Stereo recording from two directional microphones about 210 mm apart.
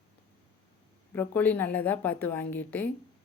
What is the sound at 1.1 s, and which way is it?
A woman's voice, 10° left (ahead or behind).